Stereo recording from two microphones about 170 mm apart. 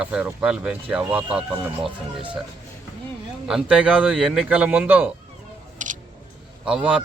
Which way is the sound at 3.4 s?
5° right (ahead or behind).